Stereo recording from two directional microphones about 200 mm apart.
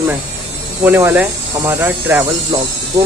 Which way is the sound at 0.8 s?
10° right (ahead or behind).